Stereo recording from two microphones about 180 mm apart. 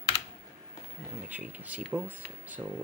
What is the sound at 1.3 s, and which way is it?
Speech, 5° right (ahead or behind).